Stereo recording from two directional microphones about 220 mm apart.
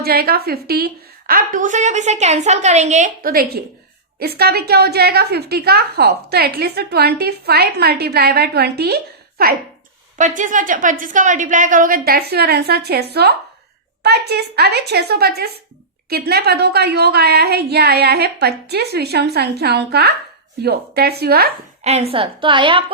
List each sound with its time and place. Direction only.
0.0 s a woman's voice: 45° right (ahead or behind)
10.2 s a woman's voice: 35° right (ahead or behind)
21.8 s a woman's voice: 30° right (ahead or behind)